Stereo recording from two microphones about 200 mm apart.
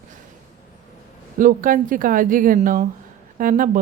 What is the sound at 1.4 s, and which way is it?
A woman's voice, 45° right (ahead or behind).